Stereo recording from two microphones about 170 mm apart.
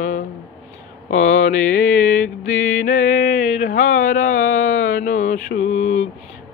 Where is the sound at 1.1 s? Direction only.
45° left (ahead or behind).